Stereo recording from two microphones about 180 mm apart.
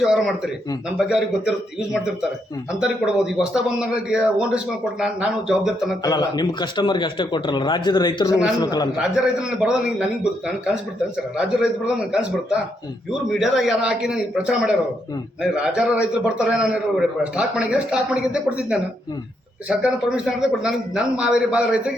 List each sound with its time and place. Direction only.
0.0 s a man's voice: centre (ahead or behind)
6.0 s speech: 20° left (ahead or behind)
9.0 s a man's voice: 5° right (ahead or behind)